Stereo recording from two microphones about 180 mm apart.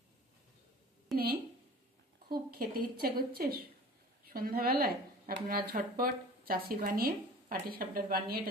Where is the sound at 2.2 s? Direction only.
55° right (ahead or behind).